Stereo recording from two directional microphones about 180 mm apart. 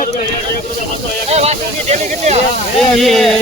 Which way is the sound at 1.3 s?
35° right (ahead or behind).